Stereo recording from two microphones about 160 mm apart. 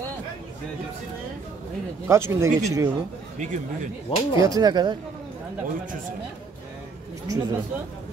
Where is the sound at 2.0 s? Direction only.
15° right (ahead or behind).